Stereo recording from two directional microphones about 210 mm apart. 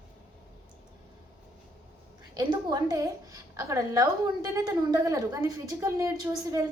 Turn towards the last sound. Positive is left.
turn(degrees=-15)  # may be behind; listen again after turning